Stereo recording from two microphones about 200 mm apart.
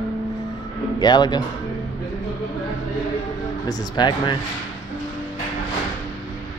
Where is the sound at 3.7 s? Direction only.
20° left (ahead or behind).